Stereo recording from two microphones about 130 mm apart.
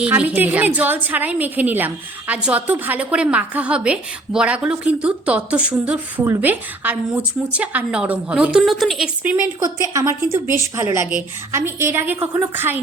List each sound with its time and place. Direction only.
0.0 s a woman's voice: 10° right (ahead or behind)
9.6 s a woman's voice: 25° right (ahead or behind)